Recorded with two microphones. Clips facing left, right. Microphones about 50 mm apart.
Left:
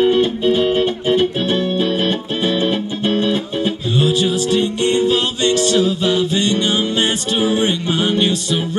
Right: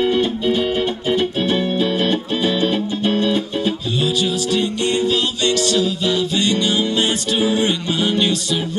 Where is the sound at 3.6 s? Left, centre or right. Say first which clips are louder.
Left 2 dB; left.